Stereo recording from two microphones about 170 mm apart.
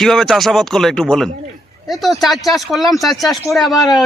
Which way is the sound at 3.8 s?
20° left (ahead or behind).